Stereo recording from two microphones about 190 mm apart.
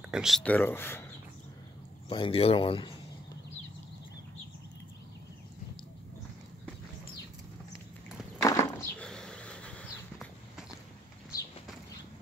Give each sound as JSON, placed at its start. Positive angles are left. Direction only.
{"t": 0.1, "sound": "speech", "side_deg": 0}
{"t": 2.0, "sound": "speech", "side_deg": 30}
{"t": 8.4, "sound": "a sound", "side_deg": 15}
{"t": 9.0, "sound": "dog", "side_deg": 5}